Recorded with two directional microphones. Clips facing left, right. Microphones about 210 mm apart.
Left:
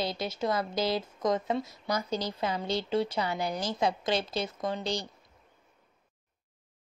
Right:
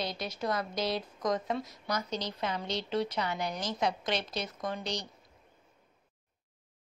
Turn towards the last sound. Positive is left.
turn(degrees=30)  # may be behind; listen again after turning